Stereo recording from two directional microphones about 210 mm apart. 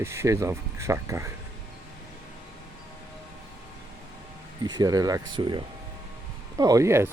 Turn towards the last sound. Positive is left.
turn(degrees=-15)  # may be behind; listen again after turning